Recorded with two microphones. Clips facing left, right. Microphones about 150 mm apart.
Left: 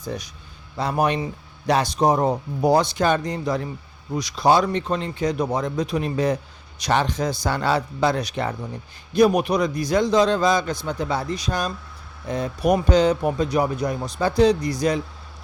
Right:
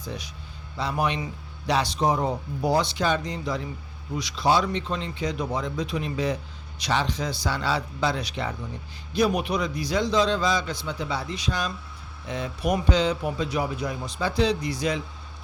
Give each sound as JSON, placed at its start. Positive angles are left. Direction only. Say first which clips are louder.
{"t": 0.0, "sound": "speech", "louder": "left 5 dB", "side_deg": 45}